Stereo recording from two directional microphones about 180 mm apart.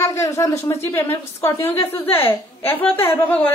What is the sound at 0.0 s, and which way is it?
A woman's voice, 15° left (ahead or behind).